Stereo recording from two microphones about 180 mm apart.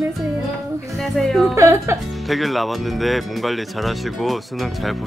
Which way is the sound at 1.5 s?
15° right (ahead or behind).